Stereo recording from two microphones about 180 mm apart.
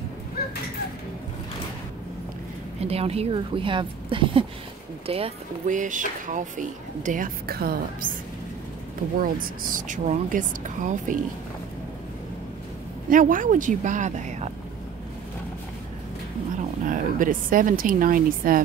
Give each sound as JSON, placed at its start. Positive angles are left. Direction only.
{"t": 2.8, "sound": "speech", "side_deg": -35}
{"t": 9.2, "sound": "speech", "side_deg": -50}
{"t": 13.1, "sound": "speech", "side_deg": -45}
{"t": 16.8, "sound": "speech", "side_deg": -50}